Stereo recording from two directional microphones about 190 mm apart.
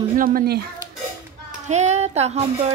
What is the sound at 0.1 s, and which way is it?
Speech, 45° right (ahead or behind).